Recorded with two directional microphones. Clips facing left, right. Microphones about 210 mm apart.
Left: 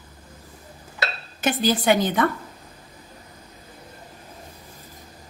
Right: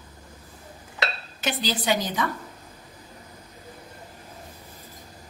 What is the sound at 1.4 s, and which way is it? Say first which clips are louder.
Speech: left 6 dB; 50° left (ahead or behind).